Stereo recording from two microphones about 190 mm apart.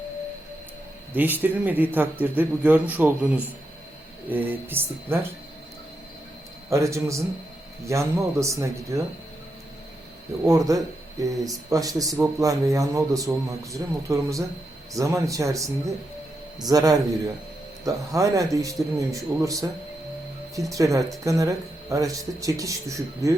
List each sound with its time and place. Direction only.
1.1 s a man's voice: 10° right (ahead or behind)
6.7 s a man's voice: 15° right (ahead or behind)
10.4 s a man's voice: 15° right (ahead or behind)